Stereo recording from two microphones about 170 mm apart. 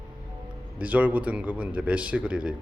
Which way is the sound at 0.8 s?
10° right (ahead or behind).